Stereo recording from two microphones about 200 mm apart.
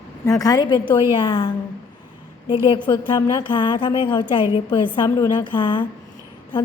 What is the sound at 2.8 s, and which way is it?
A woman's voice, 25° left (ahead or behind).